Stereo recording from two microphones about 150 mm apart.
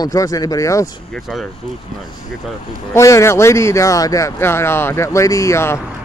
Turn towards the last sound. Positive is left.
turn(degrees=20)  # may be behind; listen again after turning